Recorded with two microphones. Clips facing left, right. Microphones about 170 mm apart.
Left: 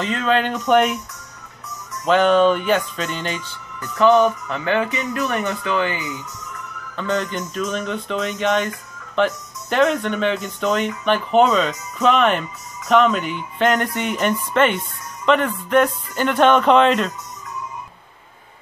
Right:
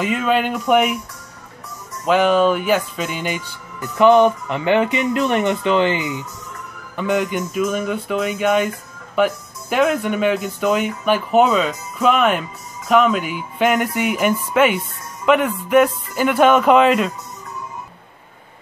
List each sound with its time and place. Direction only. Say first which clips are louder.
0.0 s speech: right 1 dB; 10° right (ahead or behind)
2.0 s speech: even; 5° right (ahead or behind); by 6.1 s 25° right (ahead or behind)
7.0 s speech: right 3 dB; 10° right (ahead or behind)